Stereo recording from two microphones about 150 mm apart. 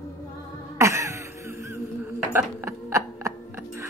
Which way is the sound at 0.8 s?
20° right (ahead or behind).